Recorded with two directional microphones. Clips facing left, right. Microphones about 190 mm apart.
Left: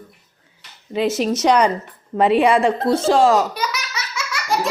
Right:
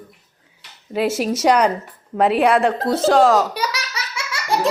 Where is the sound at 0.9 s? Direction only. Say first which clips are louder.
Left 1 dB; 5° right (ahead or behind).